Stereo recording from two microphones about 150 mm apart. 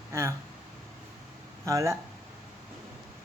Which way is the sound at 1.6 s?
20° right (ahead or behind).